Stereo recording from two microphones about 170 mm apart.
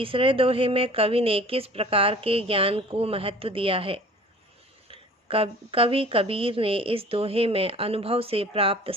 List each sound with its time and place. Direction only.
0.0 s speech: 30° right (ahead or behind)